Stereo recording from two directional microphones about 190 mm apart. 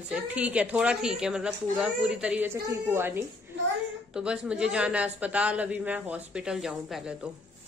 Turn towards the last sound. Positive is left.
turn(degrees=0)  # may be behind; listen again after turning